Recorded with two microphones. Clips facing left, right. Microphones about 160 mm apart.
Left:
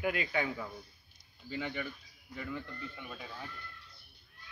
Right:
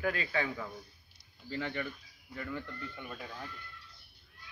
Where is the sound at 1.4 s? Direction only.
5° left (ahead or behind).